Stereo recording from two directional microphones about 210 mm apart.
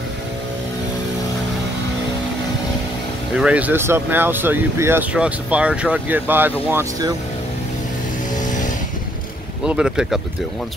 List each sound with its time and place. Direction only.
3.3 s speech: 5° right (ahead or behind)
8.4 s vehicle: 35° left (ahead or behind)
9.7 s speech: 5° right (ahead or behind)